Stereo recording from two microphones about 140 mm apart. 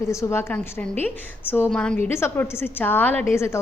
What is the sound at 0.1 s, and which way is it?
Speech, 20° left (ahead or behind).